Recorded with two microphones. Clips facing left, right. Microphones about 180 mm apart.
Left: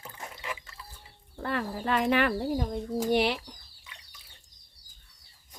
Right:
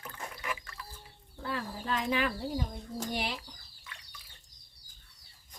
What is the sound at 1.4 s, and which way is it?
Speech, 65° left (ahead or behind).